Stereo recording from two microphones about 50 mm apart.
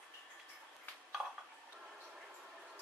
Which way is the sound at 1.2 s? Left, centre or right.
Centre.